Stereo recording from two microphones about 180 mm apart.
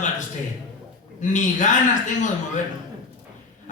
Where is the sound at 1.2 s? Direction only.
45° left (ahead or behind).